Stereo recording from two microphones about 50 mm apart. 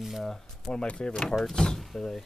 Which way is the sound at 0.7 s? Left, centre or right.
Left.